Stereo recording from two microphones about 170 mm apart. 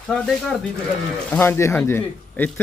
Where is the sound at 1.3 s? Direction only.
15° left (ahead or behind).